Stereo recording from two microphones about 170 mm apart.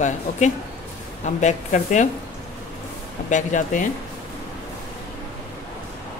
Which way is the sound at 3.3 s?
45° left (ahead or behind).